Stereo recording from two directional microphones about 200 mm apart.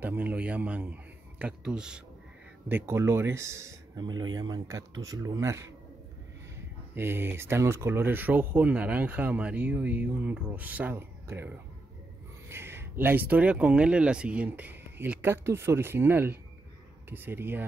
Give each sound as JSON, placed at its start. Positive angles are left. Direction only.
{"t": 0.0, "sound": "speech", "side_deg": -10}
{"t": 7.0, "sound": "speech", "side_deg": -10}